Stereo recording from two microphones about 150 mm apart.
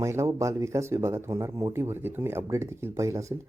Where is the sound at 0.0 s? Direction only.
20° right (ahead or behind).